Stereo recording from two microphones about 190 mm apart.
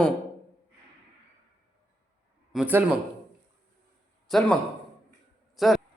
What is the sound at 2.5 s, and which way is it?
Speech, 10° right (ahead or behind).